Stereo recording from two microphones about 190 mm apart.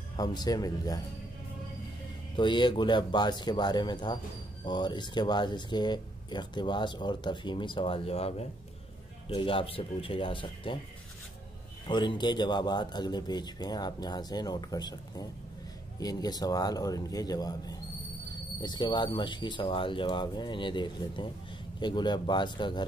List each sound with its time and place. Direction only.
0.1 s speech: 20° left (ahead or behind)
2.3 s speech: 25° left (ahead or behind)
11.9 s speech: 25° left (ahead or behind)